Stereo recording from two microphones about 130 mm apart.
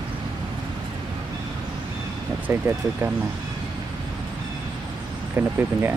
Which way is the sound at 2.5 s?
15° right (ahead or behind).